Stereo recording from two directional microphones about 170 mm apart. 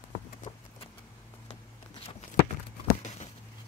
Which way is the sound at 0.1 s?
35° left (ahead or behind).